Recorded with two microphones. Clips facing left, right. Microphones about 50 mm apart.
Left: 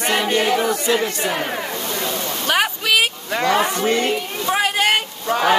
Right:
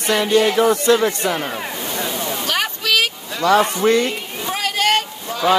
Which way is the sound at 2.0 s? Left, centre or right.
Centre.